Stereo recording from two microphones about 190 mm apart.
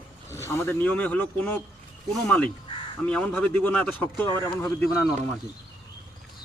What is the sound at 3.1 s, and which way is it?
Speech, 5° left (ahead or behind).